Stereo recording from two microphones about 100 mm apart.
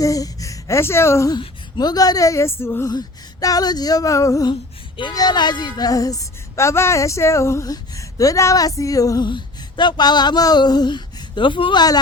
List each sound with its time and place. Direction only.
0.0 s speech: 35° left (ahead or behind)
1.3 s speech: 50° left (ahead or behind); by 2.9 s 25° left (ahead or behind)
2.9 s speech: 40° left (ahead or behind)
5.1 s speech: 45° left (ahead or behind)
9.3 s a sound: 50° left (ahead or behind)